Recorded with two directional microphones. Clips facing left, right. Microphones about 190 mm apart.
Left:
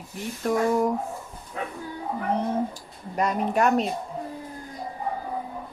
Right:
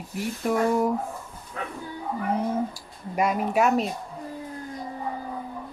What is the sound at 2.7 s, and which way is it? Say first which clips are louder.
Speech: right 1 dB; 10° right (ahead or behind).